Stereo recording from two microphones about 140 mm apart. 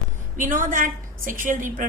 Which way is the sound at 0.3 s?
70° right (ahead or behind).